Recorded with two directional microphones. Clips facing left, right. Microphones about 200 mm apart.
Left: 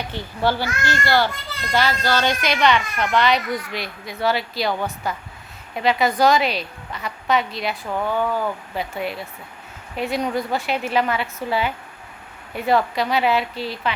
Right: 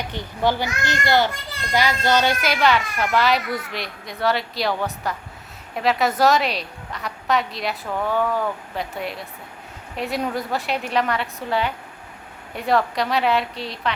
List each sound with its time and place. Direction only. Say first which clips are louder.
0.1 s a child's voice: even; 15° right (ahead or behind)
2.2 s a woman's voice: even; 5° right (ahead or behind)